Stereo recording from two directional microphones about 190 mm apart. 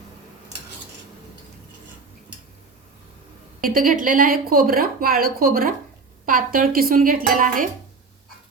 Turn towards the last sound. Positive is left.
turn(degrees=-45)  # may be behind; listen again after turning